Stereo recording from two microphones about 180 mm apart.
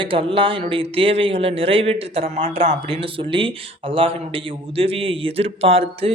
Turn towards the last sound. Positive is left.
turn(degrees=-30)  # may be behind; listen again after turning